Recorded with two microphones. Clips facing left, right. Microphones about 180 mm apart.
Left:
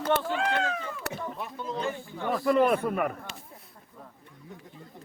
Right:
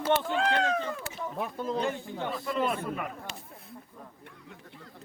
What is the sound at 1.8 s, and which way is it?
Speech, 20° right (ahead or behind).